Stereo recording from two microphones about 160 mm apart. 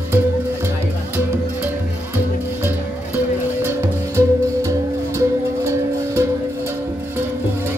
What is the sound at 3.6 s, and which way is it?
Music, 15° right (ahead or behind).